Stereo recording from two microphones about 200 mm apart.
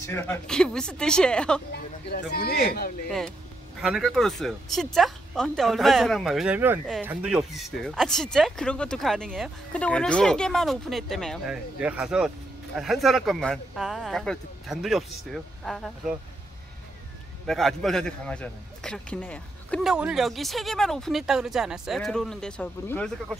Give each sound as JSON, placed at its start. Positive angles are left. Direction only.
{"t": 0.0, "sound": "a man's voice", "side_deg": 15}
{"t": 1.7, "sound": "speech", "side_deg": 55}
{"t": 3.1, "sound": "a man's voice", "side_deg": 5}
{"t": 17.5, "sound": "a man's voice", "side_deg": 0}